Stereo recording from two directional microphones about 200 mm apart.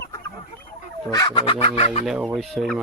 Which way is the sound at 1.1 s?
20° left (ahead or behind).